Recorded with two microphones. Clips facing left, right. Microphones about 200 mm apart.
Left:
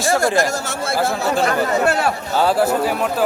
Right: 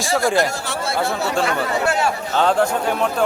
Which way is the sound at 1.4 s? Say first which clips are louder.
Left 3 dB; 40° left (ahead or behind).